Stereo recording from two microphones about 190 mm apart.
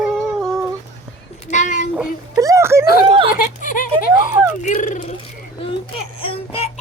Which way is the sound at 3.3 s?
45° left (ahead or behind).